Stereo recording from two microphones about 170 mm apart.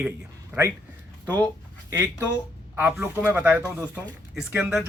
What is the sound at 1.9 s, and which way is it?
Speech, 10° right (ahead or behind).